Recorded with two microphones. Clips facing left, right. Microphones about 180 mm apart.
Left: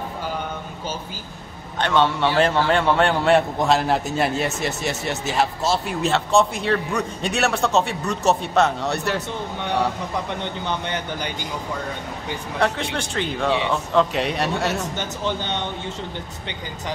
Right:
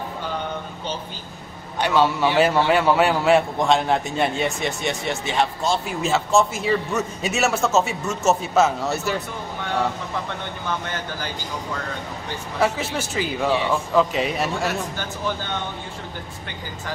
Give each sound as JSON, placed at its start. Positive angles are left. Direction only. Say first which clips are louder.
{"t": 1.8, "sound": "a man's voice", "louder": "even", "side_deg": -5}
{"t": 10.4, "sound": "a man's voice", "louder": "left 2 dB", "side_deg": 20}
{"t": 12.5, "sound": "a man's voice", "louder": "right 1 dB", "side_deg": -5}
{"t": 13.5, "sound": "a man's voice", "louder": "even", "side_deg": 20}
{"t": 13.9, "sound": "a man's voice", "louder": "left 1 dB", "side_deg": 0}
{"t": 15.0, "sound": "a man's voice", "louder": "left 2 dB", "side_deg": 20}